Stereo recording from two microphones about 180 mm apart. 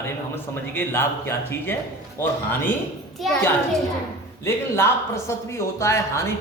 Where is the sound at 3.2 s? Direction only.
Centre (ahead or behind).